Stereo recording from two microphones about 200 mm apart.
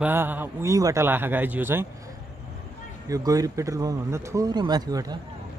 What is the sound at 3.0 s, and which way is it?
A man's voice, 15° right (ahead or behind).